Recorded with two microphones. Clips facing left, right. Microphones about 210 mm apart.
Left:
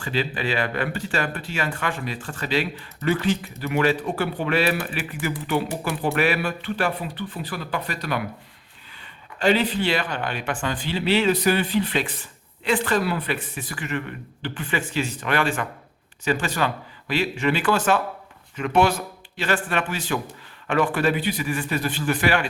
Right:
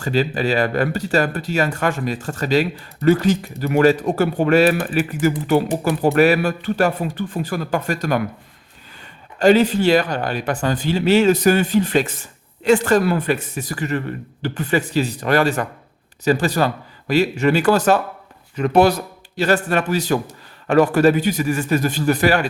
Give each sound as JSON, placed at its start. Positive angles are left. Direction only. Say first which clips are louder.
{"t": 0.0, "sound": "speech", "louder": "right 6 dB", "side_deg": -40}